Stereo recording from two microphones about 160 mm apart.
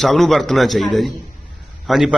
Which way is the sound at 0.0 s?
Centre (ahead or behind).